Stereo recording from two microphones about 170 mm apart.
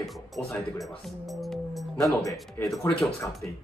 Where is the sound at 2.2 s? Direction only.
20° left (ahead or behind).